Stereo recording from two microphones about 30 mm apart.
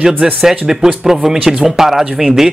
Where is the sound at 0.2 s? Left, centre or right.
Centre.